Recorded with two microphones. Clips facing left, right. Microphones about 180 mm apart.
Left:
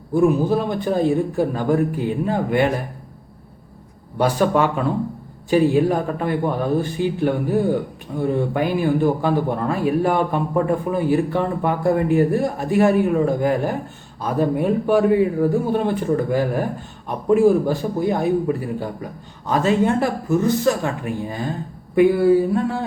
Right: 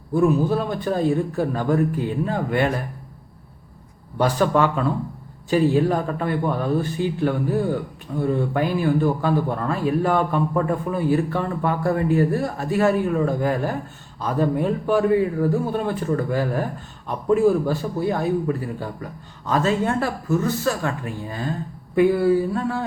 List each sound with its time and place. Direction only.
0.1 s a man's voice: 15° left (ahead or behind)
4.2 s a man's voice: 10° left (ahead or behind)